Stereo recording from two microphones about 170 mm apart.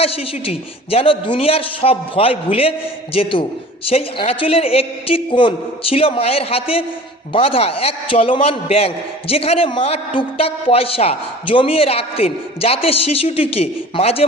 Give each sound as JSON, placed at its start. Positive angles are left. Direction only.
{"t": 0.0, "sound": "a man's voice", "side_deg": 35}